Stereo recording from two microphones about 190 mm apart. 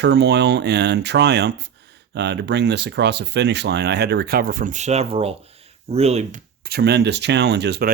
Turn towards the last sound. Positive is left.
turn(degrees=-60)  # may be behind; listen again after turning